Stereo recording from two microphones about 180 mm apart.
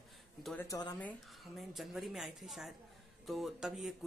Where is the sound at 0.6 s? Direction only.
20° left (ahead or behind).